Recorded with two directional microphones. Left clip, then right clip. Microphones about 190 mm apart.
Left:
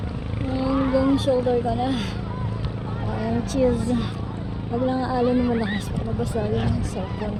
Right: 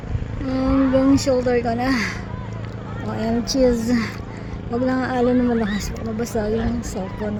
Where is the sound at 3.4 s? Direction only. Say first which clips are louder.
Right 4 dB; 50° right (ahead or behind).